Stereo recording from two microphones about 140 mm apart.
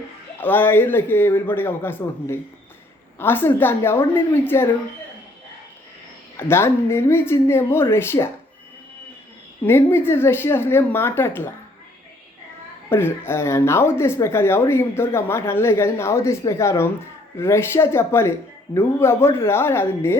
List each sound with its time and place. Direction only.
0.3 s speech: 15° left (ahead or behind)
6.3 s speech: 15° left (ahead or behind)
9.6 s speech: 15° left (ahead or behind)
12.9 s speech: 15° left (ahead or behind)